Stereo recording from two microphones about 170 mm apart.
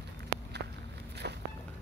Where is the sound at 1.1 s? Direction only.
80° right.